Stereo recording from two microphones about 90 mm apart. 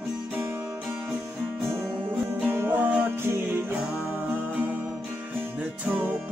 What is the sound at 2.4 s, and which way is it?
Music, 20° right (ahead or behind).